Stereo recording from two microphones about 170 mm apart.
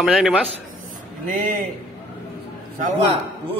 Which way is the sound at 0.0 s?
Centre (ahead or behind).